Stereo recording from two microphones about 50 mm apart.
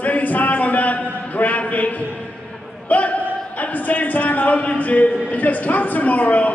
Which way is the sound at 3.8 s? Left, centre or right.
Left.